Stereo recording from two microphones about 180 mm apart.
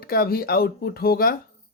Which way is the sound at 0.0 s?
55° left (ahead or behind).